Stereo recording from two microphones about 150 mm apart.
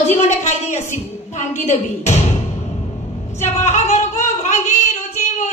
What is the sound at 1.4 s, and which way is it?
Speech, 50° left (ahead or behind).